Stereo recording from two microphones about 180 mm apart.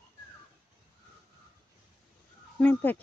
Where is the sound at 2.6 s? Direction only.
10° left (ahead or behind).